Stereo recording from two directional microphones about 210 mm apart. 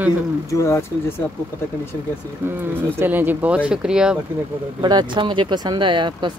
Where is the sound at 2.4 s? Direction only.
10° right (ahead or behind).